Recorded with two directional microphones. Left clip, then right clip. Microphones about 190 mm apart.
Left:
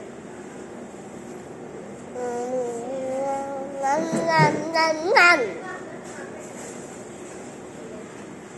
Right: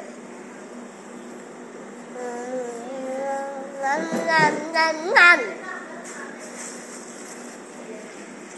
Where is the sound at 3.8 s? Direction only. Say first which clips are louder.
Even; 15° left (ahead or behind).